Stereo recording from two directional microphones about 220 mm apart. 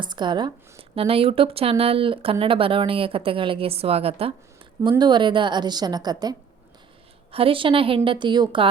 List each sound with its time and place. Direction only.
0.0 s speech: 20° right (ahead or behind)